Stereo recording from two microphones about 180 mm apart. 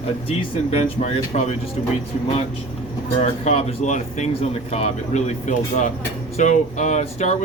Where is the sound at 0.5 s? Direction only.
35° left (ahead or behind).